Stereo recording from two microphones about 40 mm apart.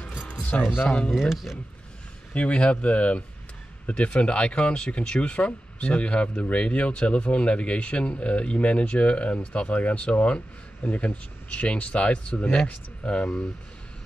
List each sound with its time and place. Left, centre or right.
0.3 s music: left
1.1 s speech: centre
2.3 s speech: left